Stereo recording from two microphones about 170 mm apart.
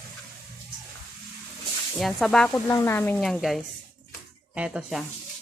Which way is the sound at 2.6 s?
15° left (ahead or behind).